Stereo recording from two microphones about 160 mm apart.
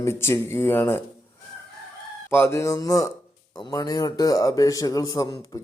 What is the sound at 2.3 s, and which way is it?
A man's voice, 15° left (ahead or behind).